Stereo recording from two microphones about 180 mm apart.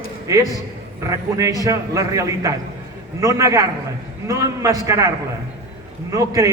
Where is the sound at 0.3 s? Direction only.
15° right (ahead or behind).